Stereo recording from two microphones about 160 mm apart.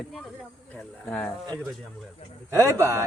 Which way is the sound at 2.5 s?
20° right (ahead or behind).